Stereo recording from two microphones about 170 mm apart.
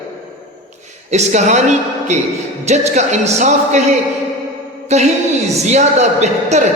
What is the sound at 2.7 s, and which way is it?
Speech, 40° right (ahead or behind).